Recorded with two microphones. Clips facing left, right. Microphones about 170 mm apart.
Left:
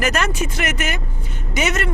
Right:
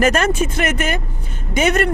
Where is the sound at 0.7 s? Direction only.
55° right (ahead or behind).